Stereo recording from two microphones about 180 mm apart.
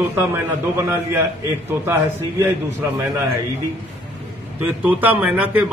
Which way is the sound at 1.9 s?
15° right (ahead or behind).